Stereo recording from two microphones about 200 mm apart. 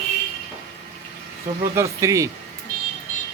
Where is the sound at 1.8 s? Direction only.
15° right (ahead or behind).